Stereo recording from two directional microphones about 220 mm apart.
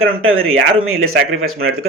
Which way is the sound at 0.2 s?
70° right (ahead or behind).